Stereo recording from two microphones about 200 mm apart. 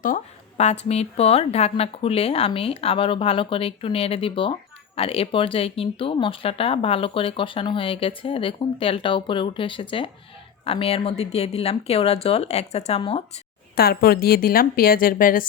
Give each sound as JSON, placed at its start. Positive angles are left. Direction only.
{"t": 0.0, "sound": "speech", "side_deg": 40}
{"t": 13.7, "sound": "speech", "side_deg": 50}